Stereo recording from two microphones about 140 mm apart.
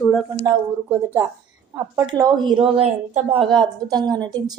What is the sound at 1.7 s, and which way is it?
A woman's voice, 25° right (ahead or behind).